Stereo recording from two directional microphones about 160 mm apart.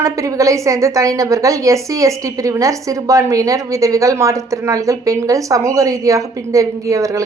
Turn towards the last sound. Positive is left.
turn(degrees=-20)  # may be behind; listen again after turning